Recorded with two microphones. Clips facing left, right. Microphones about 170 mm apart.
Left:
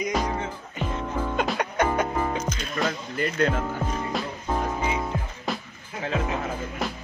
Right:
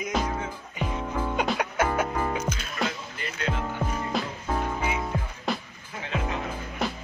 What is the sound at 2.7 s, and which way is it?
Music, 45° left (ahead or behind).